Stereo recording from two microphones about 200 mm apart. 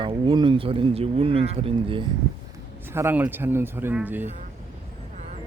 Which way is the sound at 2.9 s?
10° right (ahead or behind).